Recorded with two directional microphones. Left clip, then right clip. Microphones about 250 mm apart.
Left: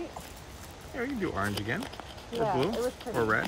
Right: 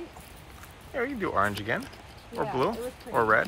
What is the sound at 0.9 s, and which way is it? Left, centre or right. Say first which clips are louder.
Speech: right 4 dB; centre.